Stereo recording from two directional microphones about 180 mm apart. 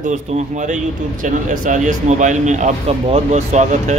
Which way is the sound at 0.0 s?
45° right (ahead or behind).